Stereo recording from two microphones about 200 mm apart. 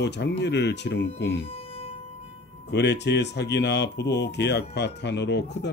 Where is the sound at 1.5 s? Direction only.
30° left (ahead or behind).